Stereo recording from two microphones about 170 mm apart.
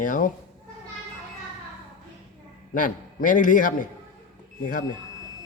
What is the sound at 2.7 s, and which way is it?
Speech, 50° left (ahead or behind).